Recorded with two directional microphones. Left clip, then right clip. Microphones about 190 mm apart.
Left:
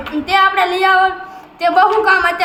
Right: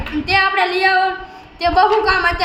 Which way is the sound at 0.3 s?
15° left (ahead or behind).